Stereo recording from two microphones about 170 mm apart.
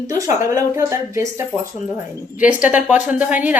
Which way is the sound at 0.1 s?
20° right (ahead or behind).